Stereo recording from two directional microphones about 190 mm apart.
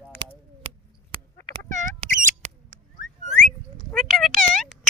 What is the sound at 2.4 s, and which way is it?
Bird, 35° right (ahead or behind).